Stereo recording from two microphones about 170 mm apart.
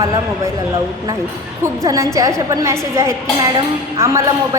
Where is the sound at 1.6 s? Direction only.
20° right (ahead or behind).